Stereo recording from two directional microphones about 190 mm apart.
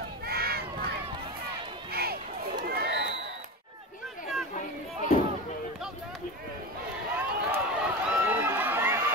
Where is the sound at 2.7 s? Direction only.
60° right (ahead or behind).